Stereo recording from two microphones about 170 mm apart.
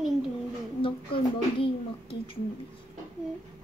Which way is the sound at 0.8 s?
30° left (ahead or behind).